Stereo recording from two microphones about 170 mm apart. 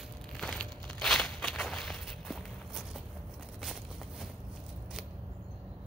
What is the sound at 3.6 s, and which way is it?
Walk, centre (ahead or behind).